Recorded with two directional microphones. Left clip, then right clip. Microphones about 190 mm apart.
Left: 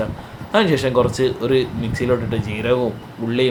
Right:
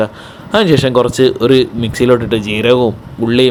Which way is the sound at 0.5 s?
45° right (ahead or behind).